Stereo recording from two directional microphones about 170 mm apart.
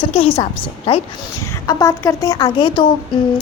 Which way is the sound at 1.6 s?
20° left (ahead or behind).